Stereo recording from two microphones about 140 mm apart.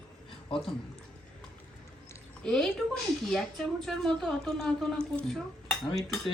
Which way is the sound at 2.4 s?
5° left (ahead or behind).